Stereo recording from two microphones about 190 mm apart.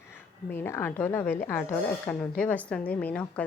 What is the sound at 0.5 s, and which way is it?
A woman's voice, 10° left (ahead or behind).